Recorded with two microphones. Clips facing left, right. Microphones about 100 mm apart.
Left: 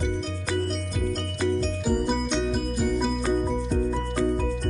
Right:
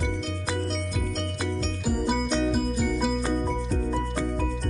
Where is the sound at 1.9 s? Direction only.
5° right (ahead or behind).